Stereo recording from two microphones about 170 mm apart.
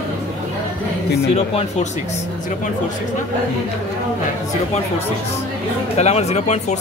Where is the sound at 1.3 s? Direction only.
40° left (ahead or behind).